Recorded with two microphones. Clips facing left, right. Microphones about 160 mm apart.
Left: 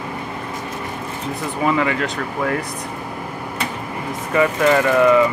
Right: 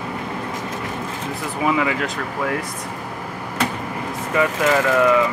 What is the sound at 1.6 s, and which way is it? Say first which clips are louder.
Speech: left 1 dB; 5° right (ahead or behind).